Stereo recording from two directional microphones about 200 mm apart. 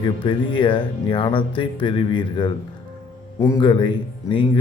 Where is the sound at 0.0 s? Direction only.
25° left (ahead or behind).